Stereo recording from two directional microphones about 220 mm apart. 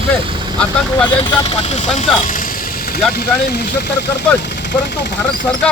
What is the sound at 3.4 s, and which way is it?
Speech, 45° left (ahead or behind).